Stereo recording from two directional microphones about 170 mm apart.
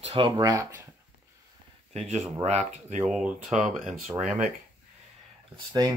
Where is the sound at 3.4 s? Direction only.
45° right (ahead or behind).